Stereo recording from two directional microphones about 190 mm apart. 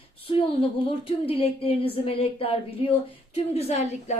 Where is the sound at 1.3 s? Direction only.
30° left (ahead or behind).